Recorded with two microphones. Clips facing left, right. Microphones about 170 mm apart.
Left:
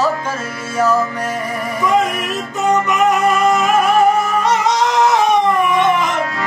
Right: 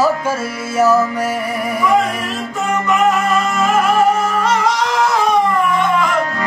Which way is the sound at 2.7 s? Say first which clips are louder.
Even; 20° left (ahead or behind).